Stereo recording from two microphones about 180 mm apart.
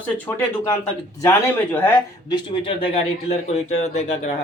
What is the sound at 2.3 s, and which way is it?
Speech, 30° left (ahead or behind).